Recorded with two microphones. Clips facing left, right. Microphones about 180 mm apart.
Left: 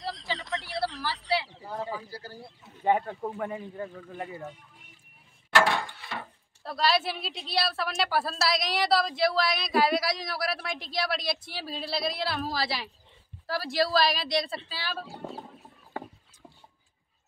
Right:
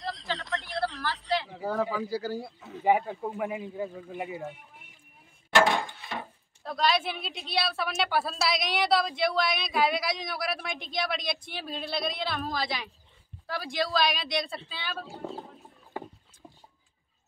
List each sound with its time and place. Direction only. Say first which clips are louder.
0.0 s a sound: even; centre (ahead or behind)
1.5 s speech: right 6 dB; 90° right
2.8 s speech: right 1 dB; 10° right (ahead or behind)
5.5 s wood: right 1 dB; 20° right (ahead or behind)
6.6 s a woman's voice: even; 5° left (ahead or behind)